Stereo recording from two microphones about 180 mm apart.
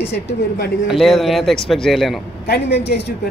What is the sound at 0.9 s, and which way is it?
Speech, centre (ahead or behind).